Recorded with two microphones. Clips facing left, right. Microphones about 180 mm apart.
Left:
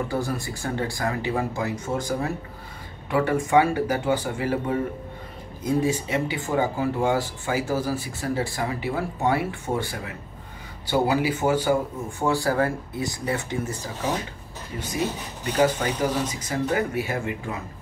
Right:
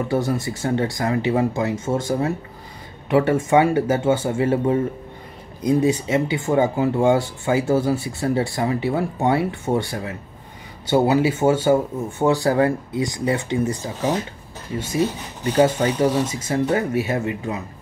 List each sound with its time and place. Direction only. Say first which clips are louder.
0.1 s speech: right 6 dB; 20° right (ahead or behind)
15.5 s speech: right 4 dB; 25° right (ahead or behind)